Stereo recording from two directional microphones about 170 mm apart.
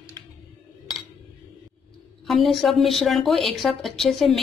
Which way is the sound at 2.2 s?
Centre (ahead or behind).